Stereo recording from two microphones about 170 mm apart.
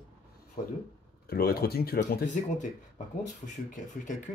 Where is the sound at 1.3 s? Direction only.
65° left (ahead or behind).